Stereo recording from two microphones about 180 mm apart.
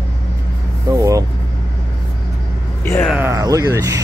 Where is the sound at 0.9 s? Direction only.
20° right (ahead or behind).